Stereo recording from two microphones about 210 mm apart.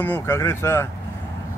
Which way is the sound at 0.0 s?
10° left (ahead or behind).